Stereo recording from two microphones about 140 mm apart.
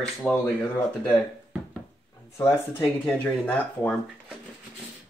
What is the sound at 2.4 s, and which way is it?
Speech, 15° left (ahead or behind).